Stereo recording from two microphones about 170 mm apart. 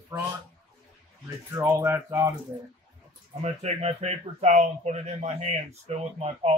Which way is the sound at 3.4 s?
40° right (ahead or behind).